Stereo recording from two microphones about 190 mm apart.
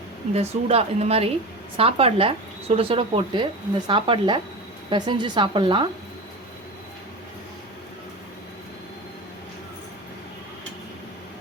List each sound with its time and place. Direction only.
0.3 s speech: 35° right (ahead or behind)